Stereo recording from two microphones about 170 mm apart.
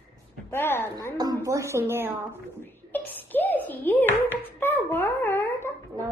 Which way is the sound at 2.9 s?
10° left (ahead or behind).